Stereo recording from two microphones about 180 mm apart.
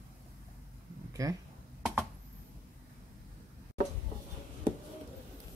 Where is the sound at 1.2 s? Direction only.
20° right (ahead or behind).